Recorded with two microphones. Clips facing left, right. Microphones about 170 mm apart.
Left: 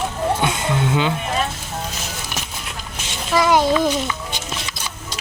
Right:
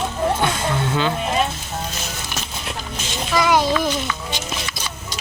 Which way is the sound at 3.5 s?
20° left (ahead or behind).